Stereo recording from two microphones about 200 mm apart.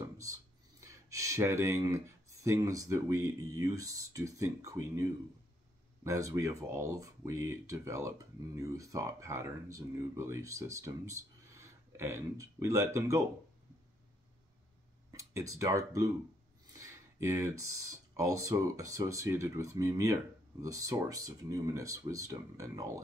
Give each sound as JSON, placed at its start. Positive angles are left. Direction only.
{"t": 0.0, "sound": "speech", "side_deg": -15}
{"t": 6.0, "sound": "speech", "side_deg": -15}
{"t": 15.0, "sound": "a sound", "side_deg": -15}
{"t": 15.6, "sound": "speech", "side_deg": -15}
{"t": 16.7, "sound": "a sound", "side_deg": -15}
{"t": 17.7, "sound": "speech", "side_deg": -15}